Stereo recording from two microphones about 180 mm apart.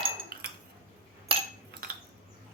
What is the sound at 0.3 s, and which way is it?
Cutlery, 55° right (ahead or behind).